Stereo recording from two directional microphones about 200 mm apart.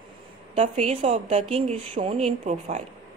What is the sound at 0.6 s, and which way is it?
A woman's voice, 30° right (ahead or behind).